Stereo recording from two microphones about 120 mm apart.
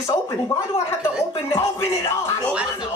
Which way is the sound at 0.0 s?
25° left (ahead or behind).